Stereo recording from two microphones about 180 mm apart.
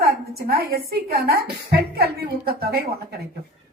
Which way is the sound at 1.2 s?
60° right (ahead or behind).